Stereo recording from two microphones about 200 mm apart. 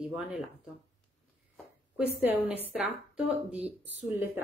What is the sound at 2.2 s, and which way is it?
A woman's voice, 10° right (ahead or behind).